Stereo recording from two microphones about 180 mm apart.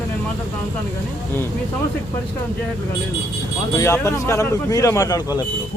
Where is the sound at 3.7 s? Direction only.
15° left (ahead or behind).